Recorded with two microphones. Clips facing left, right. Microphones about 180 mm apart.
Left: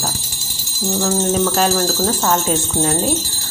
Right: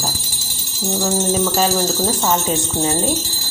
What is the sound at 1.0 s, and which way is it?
Speech, 5° right (ahead or behind).